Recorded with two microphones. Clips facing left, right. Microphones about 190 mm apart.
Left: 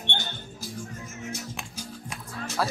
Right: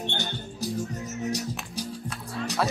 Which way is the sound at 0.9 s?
35° right (ahead or behind).